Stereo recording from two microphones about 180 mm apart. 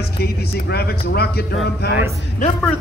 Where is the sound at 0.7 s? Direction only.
65° left (ahead or behind).